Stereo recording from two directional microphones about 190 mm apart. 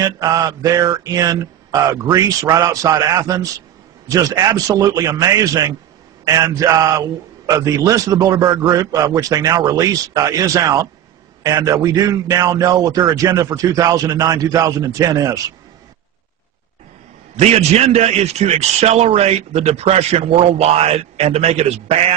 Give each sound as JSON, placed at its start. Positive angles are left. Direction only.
{"t": 0.0, "sound": "a man's voice", "side_deg": -20}
{"t": 17.4, "sound": "a man's voice", "side_deg": -35}